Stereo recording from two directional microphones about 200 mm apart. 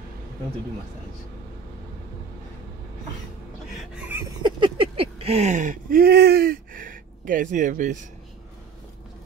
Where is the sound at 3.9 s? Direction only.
5° right (ahead or behind).